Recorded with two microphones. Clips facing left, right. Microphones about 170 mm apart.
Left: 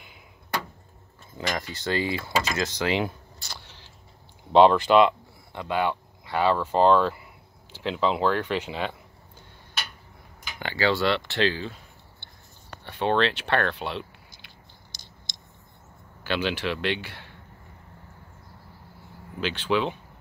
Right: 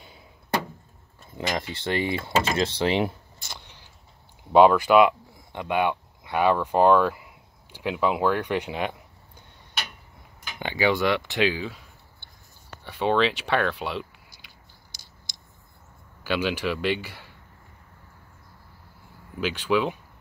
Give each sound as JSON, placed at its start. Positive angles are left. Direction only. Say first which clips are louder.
{"t": 1.5, "sound": "speech", "louder": "right 1 dB", "side_deg": -25}
{"t": 10.6, "sound": "speech", "louder": "right 1 dB", "side_deg": -15}
{"t": 14.9, "sound": "scissors", "louder": "left 3 dB", "side_deg": -10}
{"t": 16.3, "sound": "speech", "louder": "right 1 dB", "side_deg": -10}
{"t": 19.4, "sound": "speech", "louder": "right 1 dB", "side_deg": -10}